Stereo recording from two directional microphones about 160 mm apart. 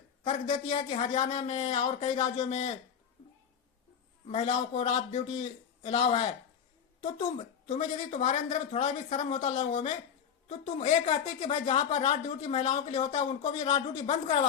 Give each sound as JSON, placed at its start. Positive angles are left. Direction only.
{"t": 0.8, "sound": "speech", "side_deg": 40}
{"t": 4.4, "sound": "speech", "side_deg": 30}